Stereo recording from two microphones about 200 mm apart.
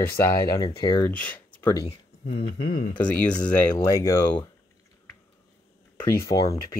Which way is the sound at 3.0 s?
5° left (ahead or behind).